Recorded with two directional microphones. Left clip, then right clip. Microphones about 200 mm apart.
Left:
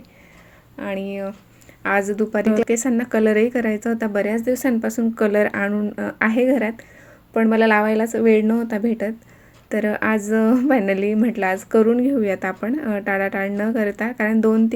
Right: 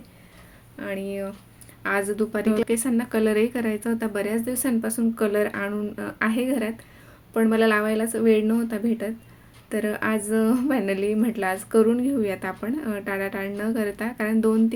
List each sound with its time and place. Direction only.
0.8 s speech: 15° left (ahead or behind)